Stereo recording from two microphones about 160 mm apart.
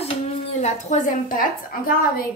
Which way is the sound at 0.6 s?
45° left (ahead or behind).